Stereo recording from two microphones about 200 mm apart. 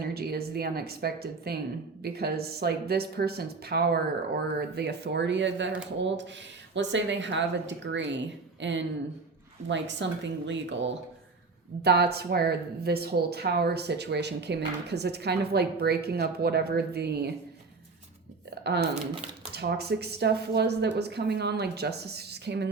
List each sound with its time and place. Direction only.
0.0 s a woman's voice: 50° right (ahead or behind)
18.6 s speech: 55° right (ahead or behind)